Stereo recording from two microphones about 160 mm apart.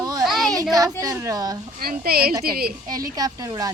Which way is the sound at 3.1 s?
20° right (ahead or behind).